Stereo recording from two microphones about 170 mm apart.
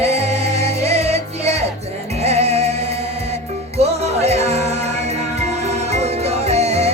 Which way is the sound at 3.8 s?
40° right (ahead or behind).